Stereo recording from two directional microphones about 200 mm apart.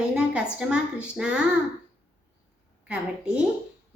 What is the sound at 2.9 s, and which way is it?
Speech, 5° right (ahead or behind).